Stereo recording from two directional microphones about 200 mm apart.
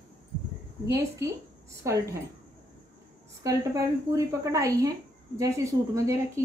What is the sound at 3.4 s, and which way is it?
Speech, 15° right (ahead or behind).